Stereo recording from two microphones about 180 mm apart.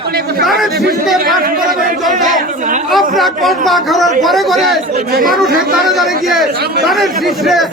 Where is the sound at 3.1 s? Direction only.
Centre (ahead or behind).